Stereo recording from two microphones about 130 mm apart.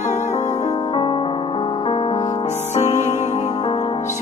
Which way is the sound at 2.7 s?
60° left (ahead or behind).